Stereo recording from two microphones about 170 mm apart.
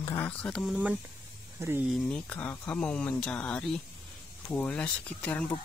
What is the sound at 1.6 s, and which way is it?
Speech, 15° right (ahead or behind).